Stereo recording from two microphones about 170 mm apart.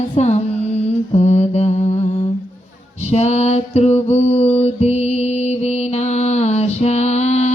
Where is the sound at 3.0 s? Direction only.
40° left (ahead or behind).